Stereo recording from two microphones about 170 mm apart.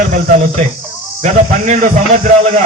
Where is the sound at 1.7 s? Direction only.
50° right (ahead or behind).